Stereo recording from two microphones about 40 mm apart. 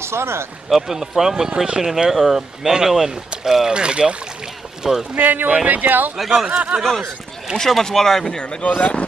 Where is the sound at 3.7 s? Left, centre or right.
Right.